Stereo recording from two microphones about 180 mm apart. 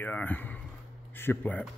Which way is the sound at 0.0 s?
10° left (ahead or behind).